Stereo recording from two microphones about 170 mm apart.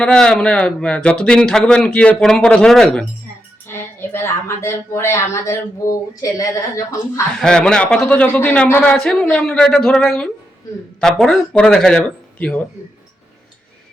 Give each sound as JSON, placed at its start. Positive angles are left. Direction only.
{"t": 0.0, "sound": "a woman's voice", "side_deg": 5}
{"t": 7.4, "sound": "a woman's voice", "side_deg": 5}